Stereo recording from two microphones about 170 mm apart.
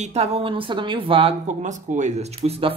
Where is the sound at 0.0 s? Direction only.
40° right (ahead or behind).